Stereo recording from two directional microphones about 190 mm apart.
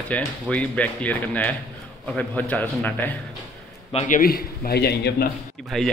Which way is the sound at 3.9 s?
40° left (ahead or behind).